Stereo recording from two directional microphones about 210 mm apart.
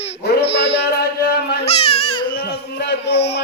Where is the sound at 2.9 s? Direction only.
55° left (ahead or behind).